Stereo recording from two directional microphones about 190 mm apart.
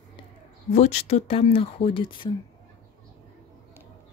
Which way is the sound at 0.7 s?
35° left (ahead or behind).